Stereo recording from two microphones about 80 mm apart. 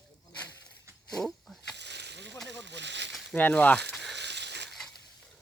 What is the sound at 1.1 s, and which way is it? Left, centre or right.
Speech, centre.